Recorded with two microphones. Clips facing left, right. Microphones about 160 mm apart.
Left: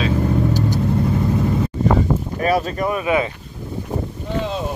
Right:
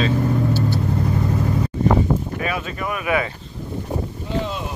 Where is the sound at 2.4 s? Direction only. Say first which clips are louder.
Left 7 dB; 40° left (ahead or behind).